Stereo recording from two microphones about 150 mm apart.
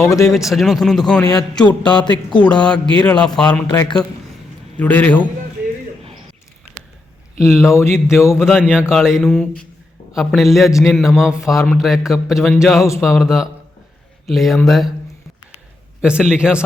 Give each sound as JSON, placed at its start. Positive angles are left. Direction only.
{"t": 0.0, "sound": "speech", "side_deg": 20}
{"t": 0.3, "sound": "a man's voice", "side_deg": 0}
{"t": 2.4, "sound": "music", "side_deg": 5}
{"t": 3.7, "sound": "speech", "side_deg": 25}
{"t": 4.8, "sound": "music", "side_deg": 10}
{"t": 7.4, "sound": "music", "side_deg": 15}
{"t": 8.4, "sound": "a man's voice", "side_deg": -5}
{"t": 16.0, "sound": "a man's voice", "side_deg": -5}